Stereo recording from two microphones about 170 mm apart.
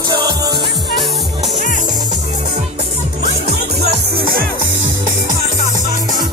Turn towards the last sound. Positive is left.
turn(degrees=-55)  # may be behind; listen again after turning